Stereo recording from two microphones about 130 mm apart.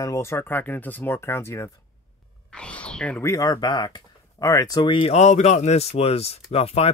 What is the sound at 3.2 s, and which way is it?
Speech, 25° left (ahead or behind).